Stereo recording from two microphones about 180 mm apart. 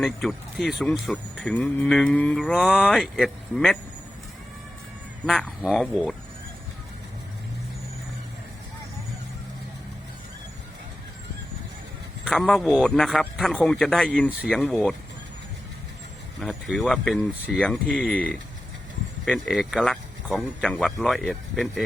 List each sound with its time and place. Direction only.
0.0 s speech: centre (ahead or behind)
5.2 s speech: 5° left (ahead or behind)
12.2 s speech: centre (ahead or behind)
16.4 s speech: centre (ahead or behind)